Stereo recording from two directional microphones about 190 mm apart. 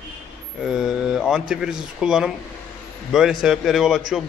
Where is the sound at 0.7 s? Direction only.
Centre (ahead or behind).